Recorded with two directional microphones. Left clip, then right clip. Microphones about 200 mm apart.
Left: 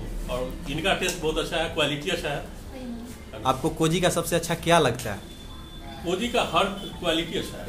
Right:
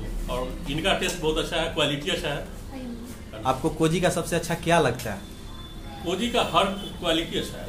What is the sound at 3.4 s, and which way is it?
Speech, 15° left (ahead or behind).